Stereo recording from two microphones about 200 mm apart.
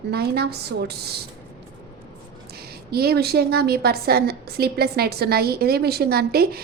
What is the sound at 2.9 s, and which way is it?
A woman's voice, 50° right (ahead or behind).